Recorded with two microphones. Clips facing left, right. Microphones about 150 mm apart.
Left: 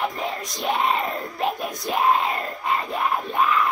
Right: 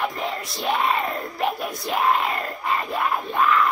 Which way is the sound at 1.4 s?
20° left (ahead or behind).